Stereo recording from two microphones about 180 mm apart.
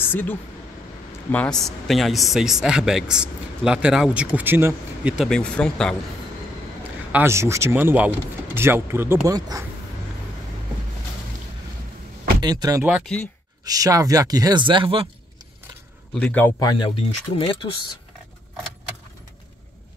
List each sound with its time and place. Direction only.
0.0 s speech: 10° left (ahead or behind)
6.8 s speech: 10° right (ahead or behind)
12.4 s speech: 25° right (ahead or behind)
16.2 s speech: 10° left (ahead or behind); by 17.6 s 30° left (ahead or behind)